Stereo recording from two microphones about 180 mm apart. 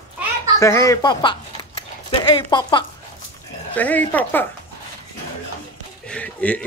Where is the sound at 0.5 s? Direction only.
15° left (ahead or behind).